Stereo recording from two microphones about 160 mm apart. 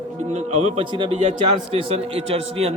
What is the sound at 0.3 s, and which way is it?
A man's voice, 40° right (ahead or behind).